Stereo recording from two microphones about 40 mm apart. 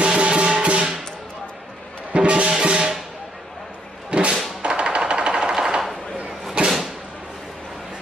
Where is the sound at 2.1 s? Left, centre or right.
Right.